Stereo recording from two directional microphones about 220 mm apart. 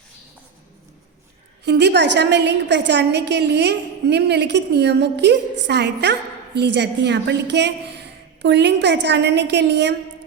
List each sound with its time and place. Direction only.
1.6 s a woman's voice: 50° right (ahead or behind)